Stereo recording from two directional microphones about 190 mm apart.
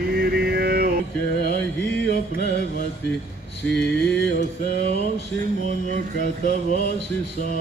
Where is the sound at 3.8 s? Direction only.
5° left (ahead or behind).